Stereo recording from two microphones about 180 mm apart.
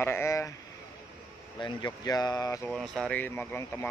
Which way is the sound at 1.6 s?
20° left (ahead or behind).